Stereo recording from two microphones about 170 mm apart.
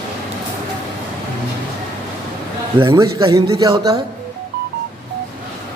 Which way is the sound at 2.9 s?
20° right (ahead or behind).